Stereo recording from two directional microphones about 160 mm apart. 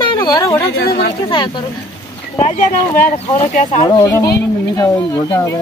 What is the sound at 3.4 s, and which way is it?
Speech, 50° left (ahead or behind).